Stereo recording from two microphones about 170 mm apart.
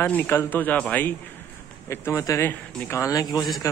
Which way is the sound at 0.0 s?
10° left (ahead or behind).